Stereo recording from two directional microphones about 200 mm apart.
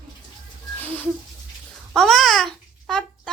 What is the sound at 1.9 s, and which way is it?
Babbling, centre (ahead or behind).